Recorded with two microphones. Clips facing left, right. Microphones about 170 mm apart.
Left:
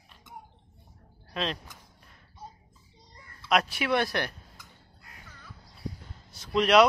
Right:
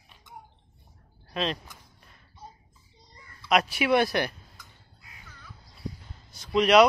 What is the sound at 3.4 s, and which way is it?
Speech, 5° right (ahead or behind).